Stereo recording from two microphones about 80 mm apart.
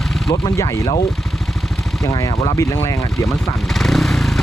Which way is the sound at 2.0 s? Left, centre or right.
Left.